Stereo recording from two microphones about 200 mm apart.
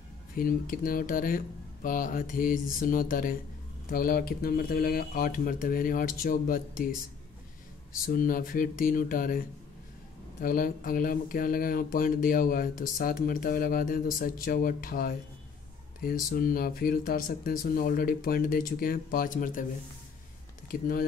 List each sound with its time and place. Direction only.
0.4 s speech: 45° left (ahead or behind)
8.0 s speech: 45° left (ahead or behind)
10.4 s speech: 45° left (ahead or behind)
20.7 s speech: 45° left (ahead or behind)